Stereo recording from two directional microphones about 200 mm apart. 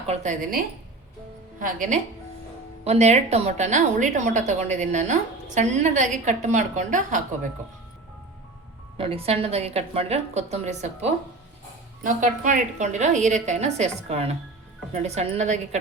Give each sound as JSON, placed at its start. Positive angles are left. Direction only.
{"t": 0.1, "sound": "a woman's voice", "side_deg": -35}
{"t": 9.0, "sound": "a woman's voice", "side_deg": -30}